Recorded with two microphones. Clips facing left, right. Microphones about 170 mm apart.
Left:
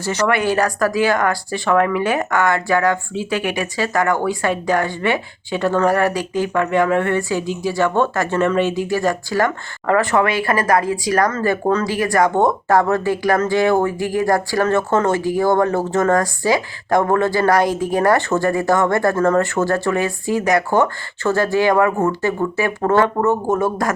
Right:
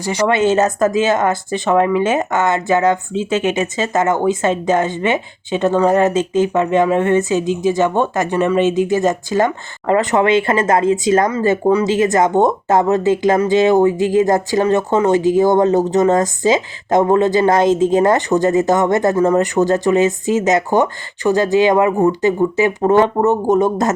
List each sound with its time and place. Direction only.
0.0 s speech: 15° right (ahead or behind)